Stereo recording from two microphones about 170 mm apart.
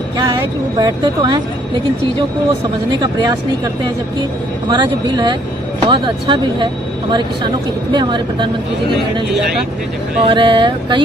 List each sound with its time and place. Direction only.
0.7 s speech: 25° right (ahead or behind)
3.0 s speech: 25° right (ahead or behind)
10.2 s speech: 30° right (ahead or behind)